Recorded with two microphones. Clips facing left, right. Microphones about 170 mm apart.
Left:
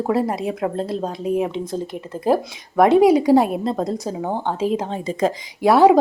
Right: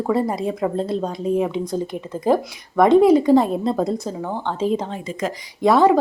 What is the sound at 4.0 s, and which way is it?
Speech, 15° left (ahead or behind).